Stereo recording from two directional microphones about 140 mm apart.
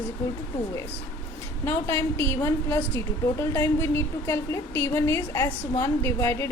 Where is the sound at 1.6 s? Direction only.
15° left (ahead or behind).